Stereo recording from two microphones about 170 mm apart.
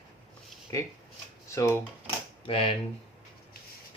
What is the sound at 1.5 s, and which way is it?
Speech, 15° left (ahead or behind).